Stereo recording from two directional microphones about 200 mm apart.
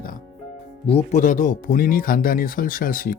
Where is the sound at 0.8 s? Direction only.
35° left (ahead or behind).